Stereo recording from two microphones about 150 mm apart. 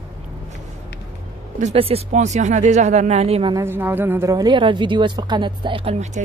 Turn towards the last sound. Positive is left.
turn(degrees=-55)  # may be behind; listen again after turning